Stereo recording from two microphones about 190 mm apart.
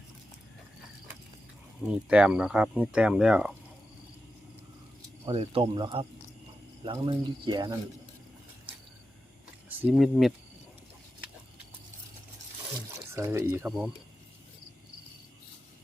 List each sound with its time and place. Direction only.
1.8 s speech: 5° right (ahead or behind)
5.2 s speech: 30° right (ahead or behind)
9.6 s speech: 5° right (ahead or behind)
13.1 s speech: 15° right (ahead or behind)